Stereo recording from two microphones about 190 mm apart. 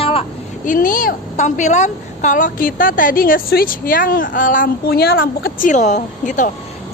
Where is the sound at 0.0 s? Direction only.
30° left (ahead or behind).